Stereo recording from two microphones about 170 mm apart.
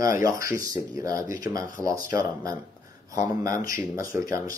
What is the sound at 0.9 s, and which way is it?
Speech, 20° right (ahead or behind).